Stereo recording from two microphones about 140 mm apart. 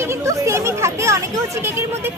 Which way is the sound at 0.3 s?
20° right (ahead or behind).